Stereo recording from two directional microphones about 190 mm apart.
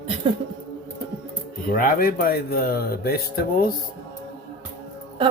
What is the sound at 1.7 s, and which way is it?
Speech, 50° left (ahead or behind).